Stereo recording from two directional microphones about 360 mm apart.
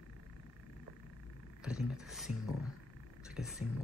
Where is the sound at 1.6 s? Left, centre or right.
Centre.